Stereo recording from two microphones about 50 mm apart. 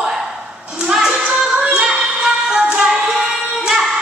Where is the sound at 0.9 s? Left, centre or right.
Centre.